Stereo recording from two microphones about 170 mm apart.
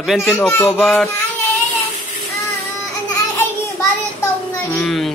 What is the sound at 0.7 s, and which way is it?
Speech, centre (ahead or behind).